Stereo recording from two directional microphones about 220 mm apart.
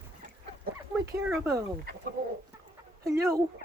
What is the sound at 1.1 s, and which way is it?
Speech, 15° right (ahead or behind).